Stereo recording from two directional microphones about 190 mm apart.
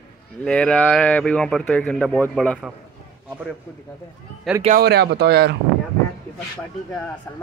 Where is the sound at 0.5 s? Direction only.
5° left (ahead or behind).